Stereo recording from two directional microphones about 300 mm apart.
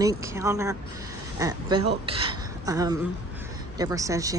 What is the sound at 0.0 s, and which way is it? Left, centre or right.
A woman's voice, centre.